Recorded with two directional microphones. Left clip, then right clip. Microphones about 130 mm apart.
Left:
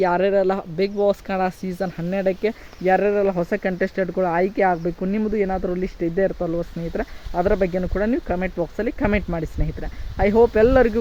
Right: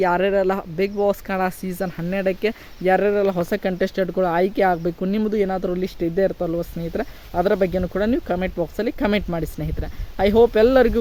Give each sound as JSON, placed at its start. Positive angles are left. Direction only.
{"t": 0.0, "sound": "speech", "side_deg": -10}